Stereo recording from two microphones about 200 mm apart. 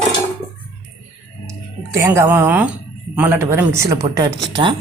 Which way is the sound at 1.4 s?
15° right (ahead or behind).